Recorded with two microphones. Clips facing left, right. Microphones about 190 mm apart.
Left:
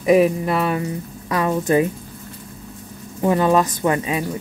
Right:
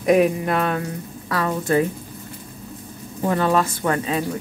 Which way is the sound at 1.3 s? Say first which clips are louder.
Left 2 dB; 20° left (ahead or behind).